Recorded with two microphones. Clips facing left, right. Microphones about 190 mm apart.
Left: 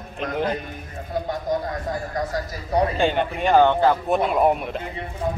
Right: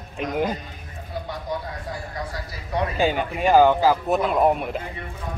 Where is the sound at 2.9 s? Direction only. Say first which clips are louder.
Left 1 dB; 5° right (ahead or behind).